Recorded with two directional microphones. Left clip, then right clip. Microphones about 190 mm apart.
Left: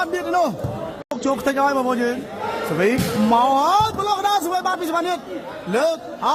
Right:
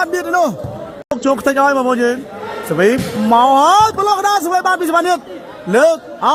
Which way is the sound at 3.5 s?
35° right (ahead or behind).